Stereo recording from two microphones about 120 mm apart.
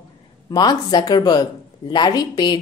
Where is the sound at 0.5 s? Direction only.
35° left (ahead or behind).